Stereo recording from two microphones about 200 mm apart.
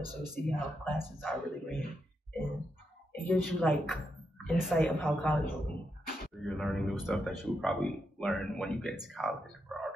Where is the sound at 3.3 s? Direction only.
5° left (ahead or behind).